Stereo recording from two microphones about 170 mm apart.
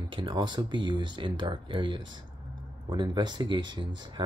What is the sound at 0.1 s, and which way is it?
Speech, 30° right (ahead or behind).